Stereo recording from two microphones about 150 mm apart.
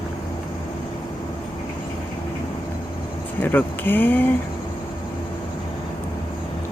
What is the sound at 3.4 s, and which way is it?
Speech, 10° left (ahead or behind).